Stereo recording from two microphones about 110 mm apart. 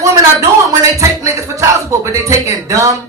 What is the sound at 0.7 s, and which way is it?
Music, 30° right (ahead or behind).